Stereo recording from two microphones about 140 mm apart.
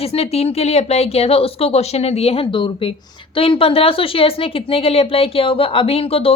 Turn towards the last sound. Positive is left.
turn(degrees=45)  # may be behind; listen again after turning